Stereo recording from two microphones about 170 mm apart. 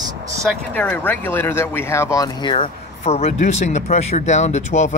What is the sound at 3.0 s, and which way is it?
Speech, 40° left (ahead or behind).